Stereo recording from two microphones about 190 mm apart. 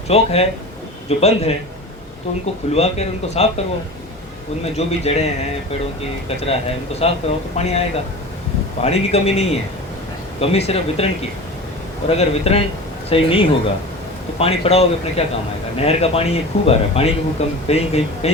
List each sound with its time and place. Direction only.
0.1 s speech: 30° left (ahead or behind)
2.7 s speech: 35° left (ahead or behind)
4.6 s speech: 35° left (ahead or behind)